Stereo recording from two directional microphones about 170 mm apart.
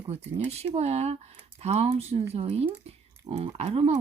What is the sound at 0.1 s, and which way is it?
Speech, 40° right (ahead or behind).